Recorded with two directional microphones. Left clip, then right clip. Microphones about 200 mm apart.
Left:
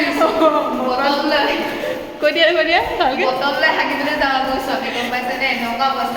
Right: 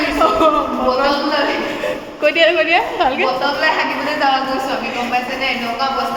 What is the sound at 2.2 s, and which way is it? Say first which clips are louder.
A woman's voice: right 1 dB; centre (ahead or behind).